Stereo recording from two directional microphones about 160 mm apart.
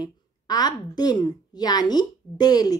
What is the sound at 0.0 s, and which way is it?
Speech, 25° left (ahead or behind).